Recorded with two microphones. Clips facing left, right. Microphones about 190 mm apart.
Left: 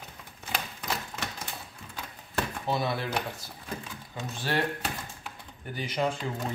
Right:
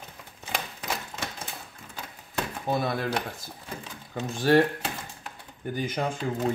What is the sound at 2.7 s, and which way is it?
Speech, 50° right (ahead or behind).